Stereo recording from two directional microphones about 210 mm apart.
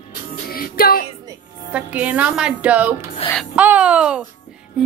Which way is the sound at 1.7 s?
5° right (ahead or behind).